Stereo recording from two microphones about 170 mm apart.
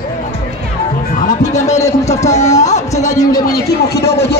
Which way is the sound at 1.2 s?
45° left (ahead or behind).